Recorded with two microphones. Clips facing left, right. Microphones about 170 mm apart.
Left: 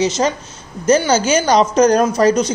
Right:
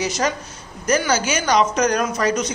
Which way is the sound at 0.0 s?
25° left (ahead or behind).